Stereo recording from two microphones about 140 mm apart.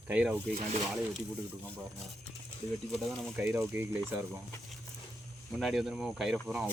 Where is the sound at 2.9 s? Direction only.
5° left (ahead or behind).